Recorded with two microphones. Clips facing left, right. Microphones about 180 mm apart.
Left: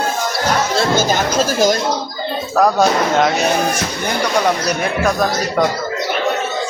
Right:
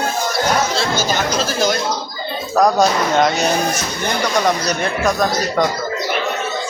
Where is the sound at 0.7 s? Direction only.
55° left (ahead or behind).